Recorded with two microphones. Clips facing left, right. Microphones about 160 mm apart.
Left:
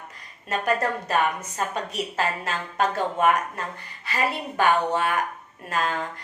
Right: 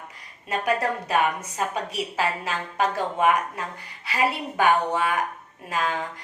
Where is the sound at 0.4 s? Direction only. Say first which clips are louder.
Even; 10° right (ahead or behind).